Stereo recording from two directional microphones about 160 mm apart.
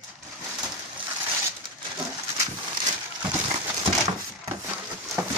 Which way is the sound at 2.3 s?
25° right (ahead or behind).